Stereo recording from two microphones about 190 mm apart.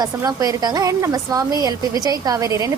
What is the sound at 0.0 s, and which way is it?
A woman's voice, 20° right (ahead or behind).